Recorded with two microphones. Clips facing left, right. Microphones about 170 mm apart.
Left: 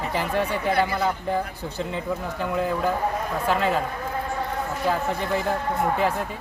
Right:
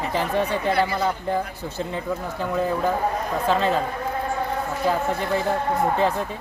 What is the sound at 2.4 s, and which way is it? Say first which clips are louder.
Speech: right 2 dB; 10° left (ahead or behind).